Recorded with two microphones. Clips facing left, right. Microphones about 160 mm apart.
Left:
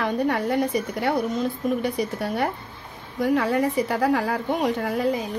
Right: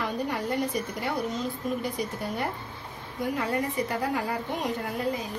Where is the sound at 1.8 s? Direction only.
80° left.